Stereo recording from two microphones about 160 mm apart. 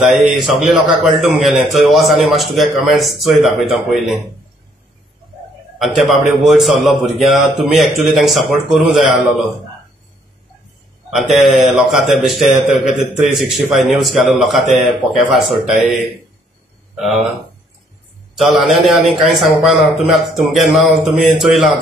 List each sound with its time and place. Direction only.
0.0 s a man's voice: centre (ahead or behind)
5.8 s a man's voice: centre (ahead or behind)
11.1 s a man's voice: centre (ahead or behind)
16.9 s speech: centre (ahead or behind)
18.3 s a man's voice: centre (ahead or behind)